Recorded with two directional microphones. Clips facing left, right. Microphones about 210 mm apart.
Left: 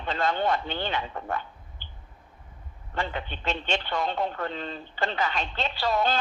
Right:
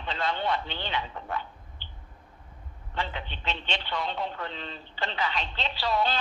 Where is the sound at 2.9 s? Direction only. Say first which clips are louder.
Left 3 dB; 50° left (ahead or behind).